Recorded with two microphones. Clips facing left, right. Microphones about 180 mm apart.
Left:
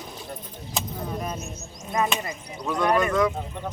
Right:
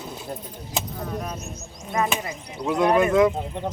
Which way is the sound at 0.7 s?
5° left (ahead or behind).